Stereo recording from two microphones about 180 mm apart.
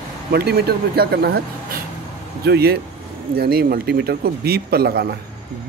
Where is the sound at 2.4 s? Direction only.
60° right (ahead or behind).